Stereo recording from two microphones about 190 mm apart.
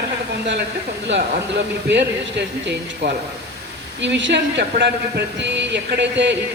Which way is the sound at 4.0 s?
70° right (ahead or behind).